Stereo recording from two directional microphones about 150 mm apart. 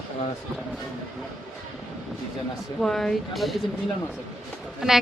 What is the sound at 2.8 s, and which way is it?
Speech, 5° left (ahead or behind).